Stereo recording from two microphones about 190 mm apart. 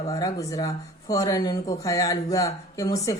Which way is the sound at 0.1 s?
20° left (ahead or behind).